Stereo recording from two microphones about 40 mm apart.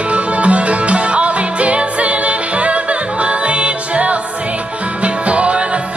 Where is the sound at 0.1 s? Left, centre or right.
Right.